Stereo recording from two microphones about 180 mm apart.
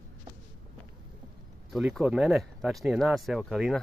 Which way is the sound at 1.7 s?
Centre (ahead or behind).